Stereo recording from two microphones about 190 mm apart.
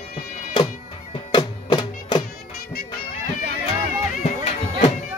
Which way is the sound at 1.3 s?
25° left (ahead or behind).